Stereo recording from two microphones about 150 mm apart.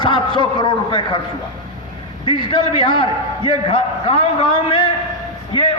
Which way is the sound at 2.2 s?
35° left (ahead or behind).